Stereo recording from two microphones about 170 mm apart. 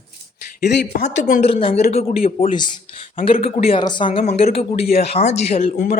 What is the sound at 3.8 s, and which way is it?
Speech, 25° left (ahead or behind).